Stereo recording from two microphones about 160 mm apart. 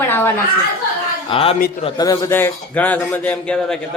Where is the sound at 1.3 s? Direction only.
35° left (ahead or behind).